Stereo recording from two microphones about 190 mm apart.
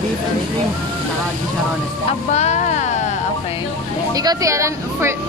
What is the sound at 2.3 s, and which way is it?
Speech, 35° left (ahead or behind).